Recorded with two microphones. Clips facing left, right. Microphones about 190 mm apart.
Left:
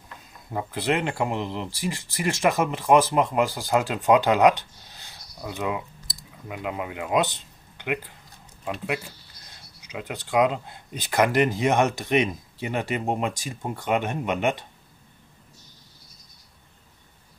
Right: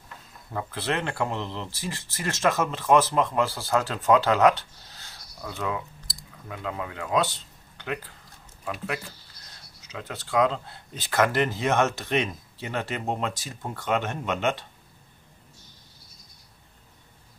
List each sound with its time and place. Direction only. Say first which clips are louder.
0.5 s speech: left 4 dB; 15° left (ahead or behind)
9.8 s speech: left 3 dB; 15° left (ahead or behind)